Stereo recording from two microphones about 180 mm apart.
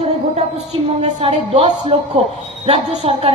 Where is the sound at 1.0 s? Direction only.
35° right (ahead or behind).